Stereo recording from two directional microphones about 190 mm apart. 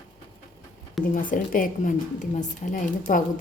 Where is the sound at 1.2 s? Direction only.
45° left (ahead or behind).